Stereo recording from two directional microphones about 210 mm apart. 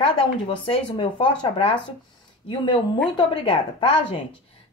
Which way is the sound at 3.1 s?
25° left (ahead or behind).